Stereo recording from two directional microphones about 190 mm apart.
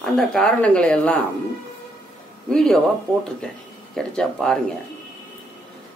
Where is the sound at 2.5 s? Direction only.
5° left (ahead or behind).